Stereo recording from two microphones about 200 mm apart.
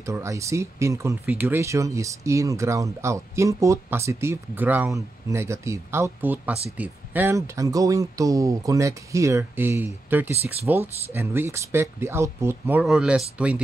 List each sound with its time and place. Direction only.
0.0 s speech: 15° right (ahead or behind)